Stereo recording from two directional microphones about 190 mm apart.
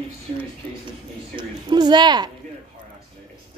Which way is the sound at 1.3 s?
25° right (ahead or behind).